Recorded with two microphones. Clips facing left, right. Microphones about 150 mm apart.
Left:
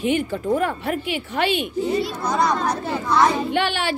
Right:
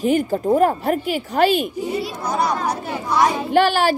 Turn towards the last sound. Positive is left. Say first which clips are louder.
# right 6 dB
turn(degrees=-40)  # may be behind; listen again after turning